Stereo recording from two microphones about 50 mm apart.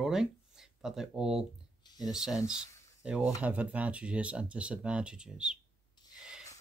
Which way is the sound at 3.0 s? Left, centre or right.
Right.